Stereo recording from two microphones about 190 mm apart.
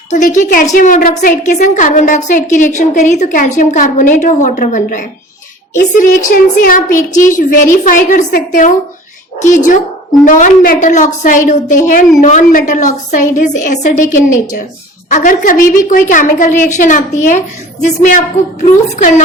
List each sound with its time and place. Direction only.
0.1 s a woman's voice: 40° left (ahead or behind)
15.1 s a woman's voice: 45° left (ahead or behind)